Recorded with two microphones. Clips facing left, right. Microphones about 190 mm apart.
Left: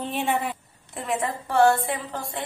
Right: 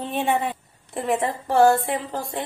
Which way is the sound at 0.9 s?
35° right (ahead or behind).